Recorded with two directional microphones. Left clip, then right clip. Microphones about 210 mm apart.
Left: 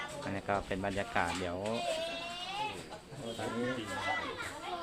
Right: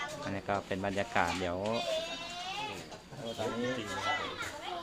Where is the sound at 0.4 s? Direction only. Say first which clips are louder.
Even; 5° right (ahead or behind).